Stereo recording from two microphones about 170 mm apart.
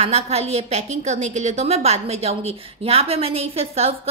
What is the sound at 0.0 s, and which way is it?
A woman's voice, 35° right (ahead or behind).